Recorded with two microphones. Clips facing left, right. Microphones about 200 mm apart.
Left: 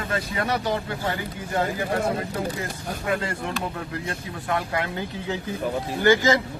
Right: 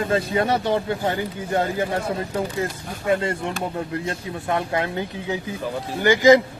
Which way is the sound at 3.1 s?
25° right (ahead or behind).